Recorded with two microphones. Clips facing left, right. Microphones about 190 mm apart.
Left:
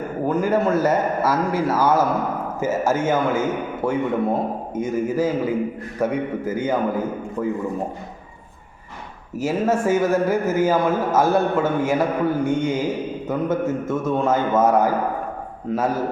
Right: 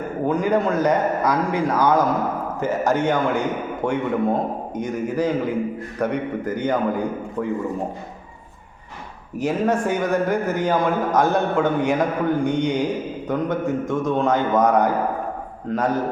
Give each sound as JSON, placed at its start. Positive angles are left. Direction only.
{"t": 0.3, "sound": "a man's voice", "side_deg": 5}
{"t": 9.4, "sound": "a man's voice", "side_deg": 5}